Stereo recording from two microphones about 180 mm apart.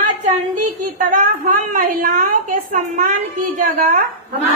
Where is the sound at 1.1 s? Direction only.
50° right (ahead or behind).